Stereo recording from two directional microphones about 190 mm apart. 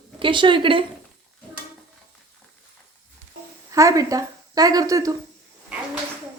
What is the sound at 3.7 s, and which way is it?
Speech, 15° right (ahead or behind).